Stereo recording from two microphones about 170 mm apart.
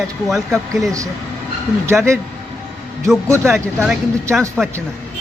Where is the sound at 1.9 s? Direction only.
15° right (ahead or behind).